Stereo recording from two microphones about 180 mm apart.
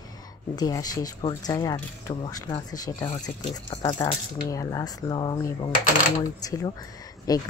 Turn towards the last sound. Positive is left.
turn(degrees=20)  # may be behind; listen again after turning